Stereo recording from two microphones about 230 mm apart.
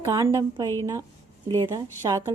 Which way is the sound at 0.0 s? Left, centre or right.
Centre.